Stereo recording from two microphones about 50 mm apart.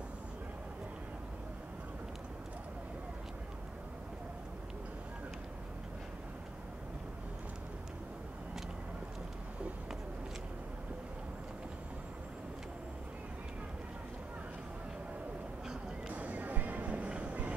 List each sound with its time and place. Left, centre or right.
16.1 s music: right